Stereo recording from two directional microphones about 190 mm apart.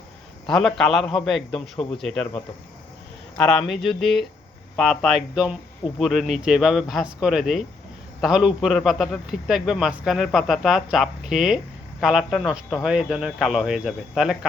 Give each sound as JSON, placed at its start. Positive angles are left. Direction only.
{"t": 0.4, "sound": "a man's voice", "side_deg": 0}
{"t": 3.3, "sound": "a man's voice", "side_deg": 5}